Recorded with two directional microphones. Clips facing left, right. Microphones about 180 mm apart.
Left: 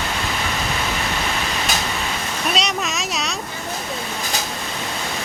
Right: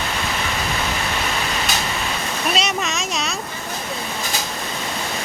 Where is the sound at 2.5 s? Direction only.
Centre (ahead or behind).